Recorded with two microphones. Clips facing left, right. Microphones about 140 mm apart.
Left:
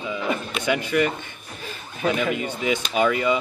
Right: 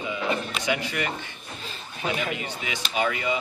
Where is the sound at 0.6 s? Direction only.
50° left (ahead or behind).